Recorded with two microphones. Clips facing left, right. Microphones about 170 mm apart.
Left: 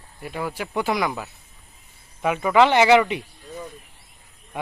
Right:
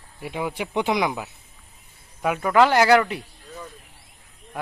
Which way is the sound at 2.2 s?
Centre (ahead or behind).